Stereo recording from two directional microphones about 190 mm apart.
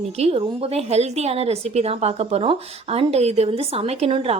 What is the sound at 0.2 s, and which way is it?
A woman's voice, 30° right (ahead or behind).